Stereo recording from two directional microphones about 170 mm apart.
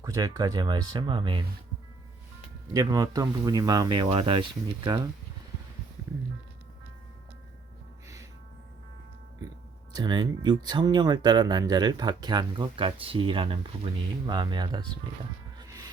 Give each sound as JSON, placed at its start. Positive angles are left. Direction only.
{"t": 0.0, "sound": "speech", "side_deg": -20}
{"t": 2.7, "sound": "speech", "side_deg": -20}
{"t": 8.0, "sound": "music", "side_deg": -15}
{"t": 9.9, "sound": "speech", "side_deg": -25}
{"t": 15.5, "sound": "music", "side_deg": -20}